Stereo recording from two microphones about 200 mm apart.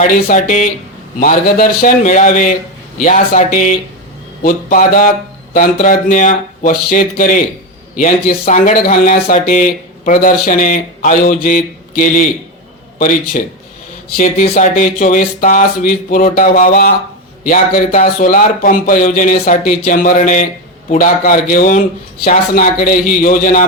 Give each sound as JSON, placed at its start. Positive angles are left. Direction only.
{"t": 0.1, "sound": "speech", "side_deg": 40}